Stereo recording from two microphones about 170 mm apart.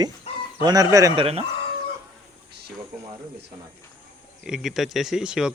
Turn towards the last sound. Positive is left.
turn(degrees=-5)  # may be behind; listen again after turning